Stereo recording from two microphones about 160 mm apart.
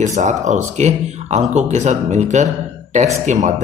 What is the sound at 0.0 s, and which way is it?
Speech, 45° right (ahead or behind).